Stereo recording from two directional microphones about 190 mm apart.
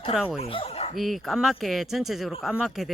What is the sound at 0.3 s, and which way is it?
Speech, 30° left (ahead or behind).